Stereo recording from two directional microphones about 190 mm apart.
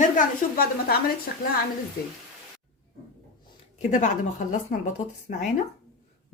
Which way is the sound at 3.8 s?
40° left (ahead or behind).